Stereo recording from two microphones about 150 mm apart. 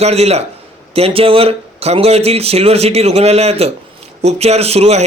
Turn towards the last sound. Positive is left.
turn(degrees=-45)  # may be behind; listen again after turning